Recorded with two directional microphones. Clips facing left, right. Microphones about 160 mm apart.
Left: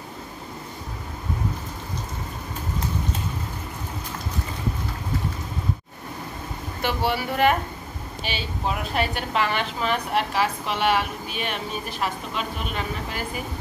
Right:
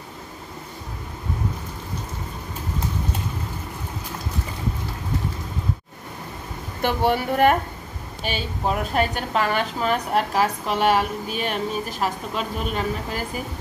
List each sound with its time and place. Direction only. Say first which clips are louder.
6.8 s a woman's voice: right 4 dB; 50° right (ahead or behind)